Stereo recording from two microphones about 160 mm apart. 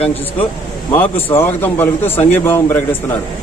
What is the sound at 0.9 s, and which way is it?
A man's voice, 15° left (ahead or behind).